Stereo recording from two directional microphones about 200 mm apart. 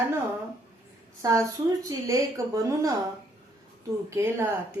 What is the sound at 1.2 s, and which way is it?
A woman's voice, 15° right (ahead or behind).